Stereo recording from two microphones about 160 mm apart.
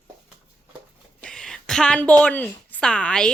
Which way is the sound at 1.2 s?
5° left (ahead or behind).